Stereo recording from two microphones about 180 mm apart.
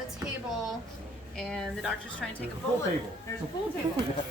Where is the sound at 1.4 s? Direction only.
5° left (ahead or behind).